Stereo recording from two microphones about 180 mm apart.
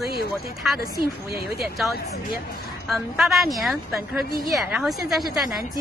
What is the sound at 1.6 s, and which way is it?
A woman's voice, centre (ahead or behind).